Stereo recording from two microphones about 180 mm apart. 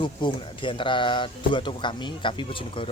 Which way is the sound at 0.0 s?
25° left (ahead or behind).